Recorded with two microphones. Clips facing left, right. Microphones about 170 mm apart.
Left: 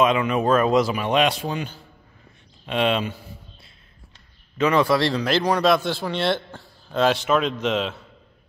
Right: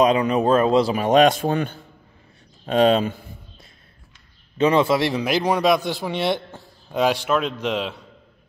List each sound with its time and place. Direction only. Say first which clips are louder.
0.0 s a man's voice: right 2 dB; 35° right (ahead or behind); by 1.8 s 55° right (ahead or behind)
2.6 s a man's voice: right 5 dB; 40° right (ahead or behind)
4.6 s speech: right 1 dB; 25° right (ahead or behind); by 8.0 s 10° right (ahead or behind)